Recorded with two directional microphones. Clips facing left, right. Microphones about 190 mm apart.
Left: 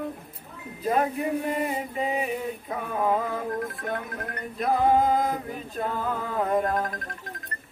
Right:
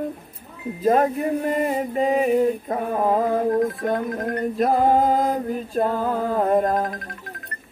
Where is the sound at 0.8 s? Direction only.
45° right (ahead or behind).